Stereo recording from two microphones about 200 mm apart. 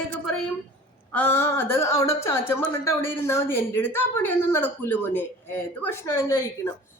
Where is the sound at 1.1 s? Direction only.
10° left (ahead or behind).